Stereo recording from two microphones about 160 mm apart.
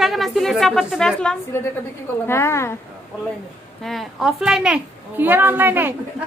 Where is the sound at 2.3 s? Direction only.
15° left (ahead or behind).